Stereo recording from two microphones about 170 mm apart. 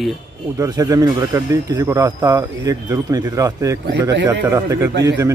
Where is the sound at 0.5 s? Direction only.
20° right (ahead or behind).